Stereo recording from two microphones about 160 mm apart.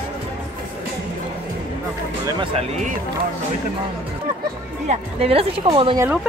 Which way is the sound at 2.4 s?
40° right (ahead or behind).